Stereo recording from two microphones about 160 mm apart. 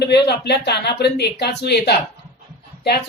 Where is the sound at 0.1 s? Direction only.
90° left.